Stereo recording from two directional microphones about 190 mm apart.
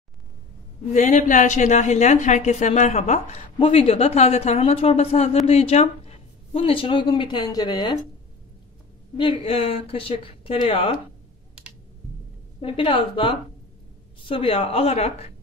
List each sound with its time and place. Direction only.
0.9 s a woman's voice: 40° left (ahead or behind); by 7.9 s 20° left (ahead or behind)
9.1 s speech: 25° left (ahead or behind)
12.5 s a woman's voice: 30° left (ahead or behind)